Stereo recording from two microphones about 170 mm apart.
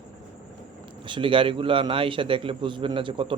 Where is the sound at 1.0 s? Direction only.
30° right (ahead or behind).